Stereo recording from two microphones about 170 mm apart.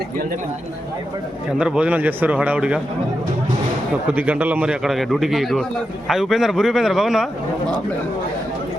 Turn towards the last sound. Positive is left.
turn(degrees=0)  # may be behind; listen again after turning